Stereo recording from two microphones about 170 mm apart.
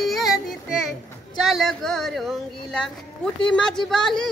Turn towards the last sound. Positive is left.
turn(degrees=5)  # may be behind; listen again after turning